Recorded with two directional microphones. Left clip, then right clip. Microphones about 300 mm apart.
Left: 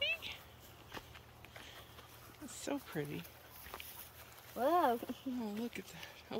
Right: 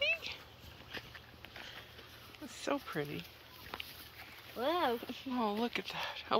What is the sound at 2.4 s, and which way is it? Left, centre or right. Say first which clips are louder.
Speech: right 5 dB; centre.